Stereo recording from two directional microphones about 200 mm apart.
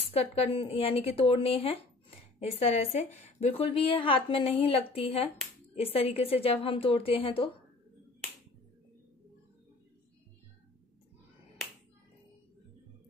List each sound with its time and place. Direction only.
0.1 s a woman's voice: 30° left (ahead or behind)